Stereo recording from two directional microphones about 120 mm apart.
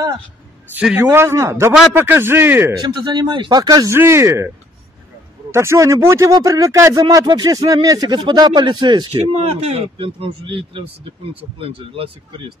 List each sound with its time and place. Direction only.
0.9 s a man's voice: 20° right (ahead or behind)
2.8 s a man's voice: 35° right (ahead or behind)
5.5 s speech: 20° right (ahead or behind); by 9.1 s 40° right (ahead or behind)
9.1 s speech: 55° right (ahead or behind)